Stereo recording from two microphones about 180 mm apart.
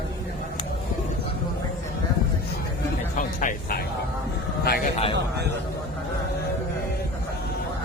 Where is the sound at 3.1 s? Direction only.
45° left (ahead or behind).